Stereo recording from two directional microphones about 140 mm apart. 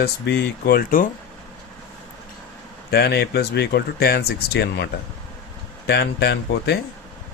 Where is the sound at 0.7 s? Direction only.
80° left.